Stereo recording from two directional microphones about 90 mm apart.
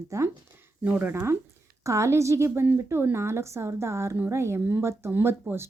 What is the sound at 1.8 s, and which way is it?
A woman's voice, 35° right (ahead or behind).